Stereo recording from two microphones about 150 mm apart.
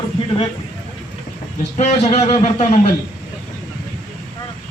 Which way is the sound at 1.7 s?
45° left (ahead or behind).